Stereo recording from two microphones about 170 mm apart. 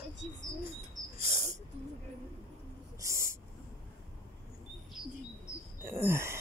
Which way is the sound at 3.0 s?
20° right (ahead or behind).